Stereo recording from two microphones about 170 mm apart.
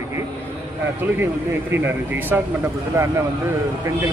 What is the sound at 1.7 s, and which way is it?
Speech, 10° right (ahead or behind).